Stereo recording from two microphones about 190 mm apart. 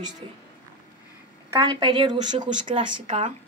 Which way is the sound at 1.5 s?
20° right (ahead or behind).